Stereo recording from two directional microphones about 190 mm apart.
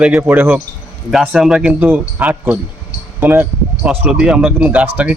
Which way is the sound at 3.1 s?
10° right (ahead or behind).